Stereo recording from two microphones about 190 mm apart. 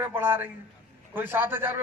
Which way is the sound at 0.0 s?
10° right (ahead or behind).